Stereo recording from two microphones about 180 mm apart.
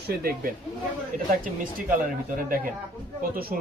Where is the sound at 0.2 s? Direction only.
55° right (ahead or behind).